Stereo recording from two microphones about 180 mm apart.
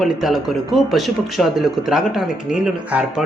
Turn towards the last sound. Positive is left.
turn(degrees=-5)  # may be behind; listen again after turning